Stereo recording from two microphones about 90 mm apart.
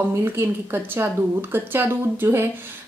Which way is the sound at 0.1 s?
30° right (ahead or behind).